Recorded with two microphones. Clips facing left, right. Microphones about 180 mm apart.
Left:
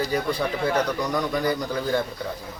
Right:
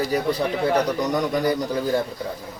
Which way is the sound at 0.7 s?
20° right (ahead or behind).